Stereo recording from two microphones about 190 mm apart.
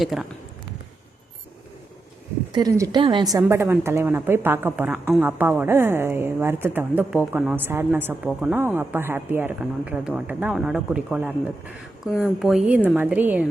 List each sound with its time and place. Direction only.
0.0 s a woman's voice: centre (ahead or behind)
2.5 s a woman's voice: 20° right (ahead or behind)